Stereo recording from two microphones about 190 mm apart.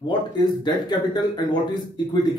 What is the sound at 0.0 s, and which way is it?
Speech, 20° left (ahead or behind).